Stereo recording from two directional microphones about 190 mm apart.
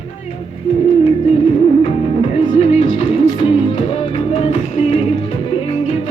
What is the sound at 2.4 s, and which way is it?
Music, 30° left (ahead or behind).